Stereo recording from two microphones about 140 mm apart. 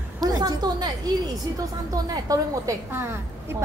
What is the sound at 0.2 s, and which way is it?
A woman's voice, 30° right (ahead or behind).